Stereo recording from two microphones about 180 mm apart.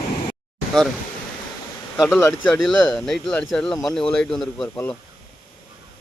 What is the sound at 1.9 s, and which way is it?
Speech, 15° left (ahead or behind).